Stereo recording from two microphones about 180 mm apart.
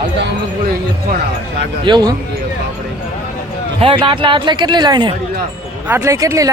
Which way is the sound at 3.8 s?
30° right (ahead or behind).